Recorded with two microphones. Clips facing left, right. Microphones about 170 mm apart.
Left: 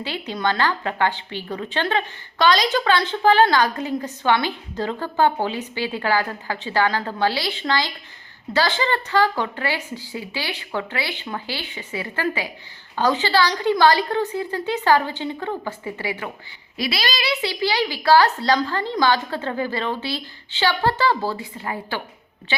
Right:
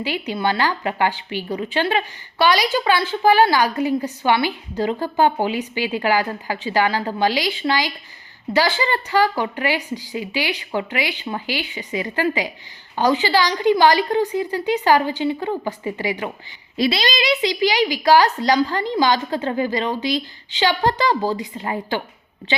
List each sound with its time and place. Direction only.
0.0 s a woman's voice: 10° right (ahead or behind)